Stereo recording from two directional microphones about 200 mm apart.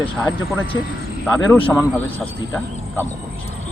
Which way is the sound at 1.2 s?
10° left (ahead or behind).